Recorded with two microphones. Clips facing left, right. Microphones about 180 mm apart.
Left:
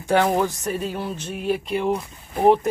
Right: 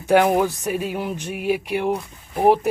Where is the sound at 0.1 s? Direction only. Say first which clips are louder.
Right 3 dB; 15° right (ahead or behind).